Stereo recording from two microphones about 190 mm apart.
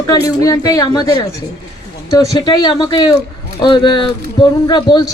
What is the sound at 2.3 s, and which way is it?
A man's voice, 20° left (ahead or behind).